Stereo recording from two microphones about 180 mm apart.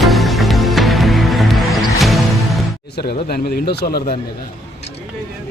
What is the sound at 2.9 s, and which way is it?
A man's voice, 60° left (ahead or behind).